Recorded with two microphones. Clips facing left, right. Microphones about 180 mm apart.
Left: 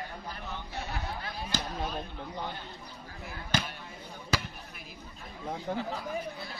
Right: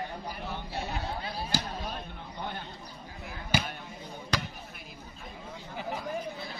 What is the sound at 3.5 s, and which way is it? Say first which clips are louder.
Basketball bounce: right 2 dB; 10° right (ahead or behind).